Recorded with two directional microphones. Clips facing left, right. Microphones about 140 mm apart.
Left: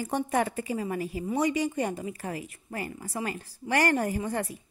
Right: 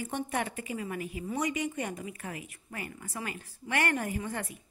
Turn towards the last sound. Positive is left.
turn(degrees=35)  # may be behind; listen again after turning